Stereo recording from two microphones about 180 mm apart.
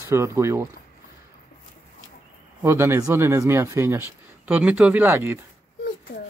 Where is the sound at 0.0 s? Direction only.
15° right (ahead or behind).